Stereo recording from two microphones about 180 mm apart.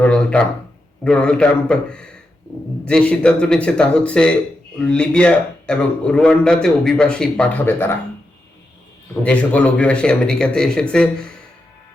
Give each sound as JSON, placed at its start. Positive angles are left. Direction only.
{"t": 0.0, "sound": "a sound", "side_deg": 5}
{"t": 1.0, "sound": "a man's voice", "side_deg": 5}
{"t": 9.2, "sound": "a man's voice", "side_deg": 5}